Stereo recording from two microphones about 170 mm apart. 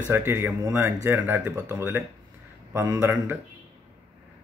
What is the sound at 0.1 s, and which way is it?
Speech, 15° right (ahead or behind).